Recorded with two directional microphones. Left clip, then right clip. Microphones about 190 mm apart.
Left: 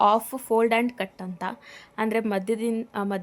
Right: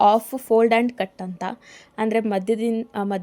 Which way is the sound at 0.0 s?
15° right (ahead or behind).